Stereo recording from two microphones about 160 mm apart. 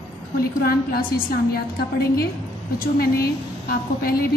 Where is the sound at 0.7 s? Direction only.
70° left (ahead or behind).